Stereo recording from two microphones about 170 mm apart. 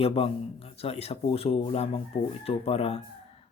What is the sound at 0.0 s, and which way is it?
Speech, 35° left (ahead or behind).